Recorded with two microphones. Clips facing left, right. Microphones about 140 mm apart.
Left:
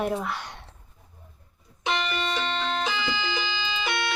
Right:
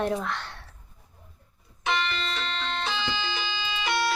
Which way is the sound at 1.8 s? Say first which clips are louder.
Left 1 dB; 15° left (ahead or behind).